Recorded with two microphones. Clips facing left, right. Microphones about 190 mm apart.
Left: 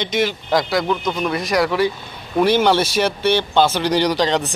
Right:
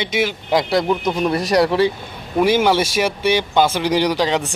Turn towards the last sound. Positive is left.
turn(degrees=-10)  # may be behind; listen again after turning